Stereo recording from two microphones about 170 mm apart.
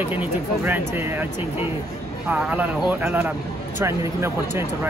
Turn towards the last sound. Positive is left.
turn(degrees=-15)  # may be behind; listen again after turning